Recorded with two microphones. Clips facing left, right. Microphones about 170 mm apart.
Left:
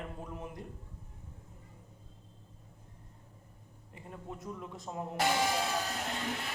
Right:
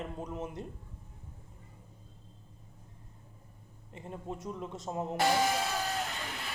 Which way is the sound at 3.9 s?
20° right (ahead or behind).